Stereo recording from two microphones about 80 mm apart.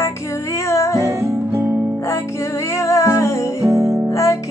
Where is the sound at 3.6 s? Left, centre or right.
Right.